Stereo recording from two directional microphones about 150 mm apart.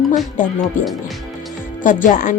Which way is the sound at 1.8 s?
60° left (ahead or behind).